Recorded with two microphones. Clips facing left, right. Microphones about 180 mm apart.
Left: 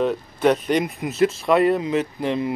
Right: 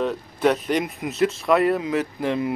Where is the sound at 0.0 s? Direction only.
Centre (ahead or behind).